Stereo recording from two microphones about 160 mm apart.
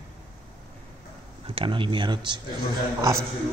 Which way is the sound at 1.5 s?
30° right (ahead or behind).